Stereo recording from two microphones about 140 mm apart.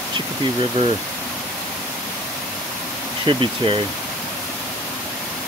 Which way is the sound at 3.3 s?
40° right (ahead or behind).